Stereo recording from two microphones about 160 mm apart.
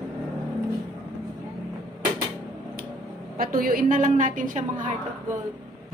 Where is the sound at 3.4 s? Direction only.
60° right (ahead or behind).